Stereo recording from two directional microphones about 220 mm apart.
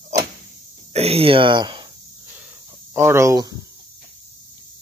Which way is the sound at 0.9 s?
25° right (ahead or behind).